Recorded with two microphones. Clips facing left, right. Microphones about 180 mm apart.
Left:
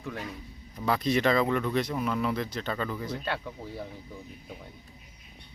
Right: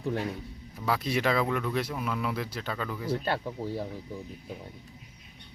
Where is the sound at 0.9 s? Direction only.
5° right (ahead or behind).